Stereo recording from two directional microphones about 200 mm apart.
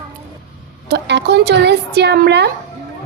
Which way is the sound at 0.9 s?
55° right (ahead or behind).